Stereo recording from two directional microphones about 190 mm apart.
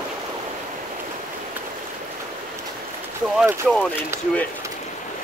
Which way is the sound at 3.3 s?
5° right (ahead or behind).